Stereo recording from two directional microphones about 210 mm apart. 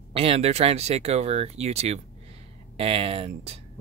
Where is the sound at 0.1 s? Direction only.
30° right (ahead or behind).